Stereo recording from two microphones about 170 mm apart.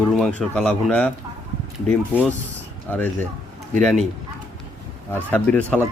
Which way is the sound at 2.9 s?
10° left (ahead or behind).